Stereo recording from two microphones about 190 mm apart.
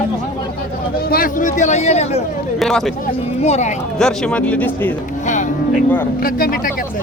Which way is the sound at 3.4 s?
35° left (ahead or behind).